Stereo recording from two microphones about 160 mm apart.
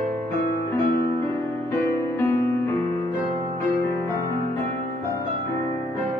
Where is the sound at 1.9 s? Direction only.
15° left (ahead or behind).